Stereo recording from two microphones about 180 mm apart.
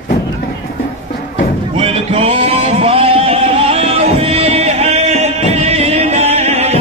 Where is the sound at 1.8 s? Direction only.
35° right (ahead or behind).